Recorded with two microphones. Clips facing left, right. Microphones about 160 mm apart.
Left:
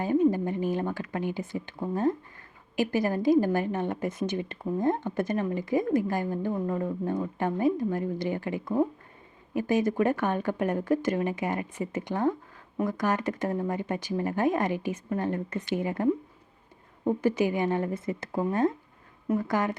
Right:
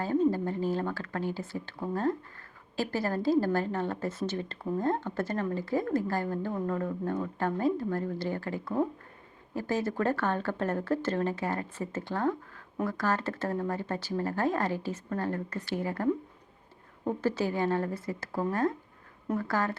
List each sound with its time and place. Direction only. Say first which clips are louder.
0.0 s a woman's voice: left 3 dB; 15° left (ahead or behind)